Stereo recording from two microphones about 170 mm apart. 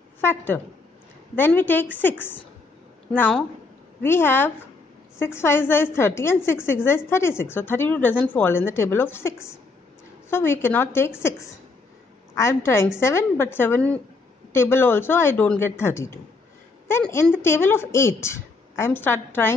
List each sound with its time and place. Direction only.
0.2 s a woman's voice: 15° left (ahead or behind)